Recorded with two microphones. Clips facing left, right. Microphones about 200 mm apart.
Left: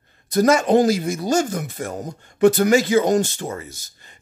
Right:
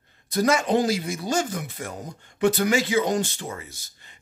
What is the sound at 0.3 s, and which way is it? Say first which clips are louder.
Speech: left 6 dB; 45° left (ahead or behind).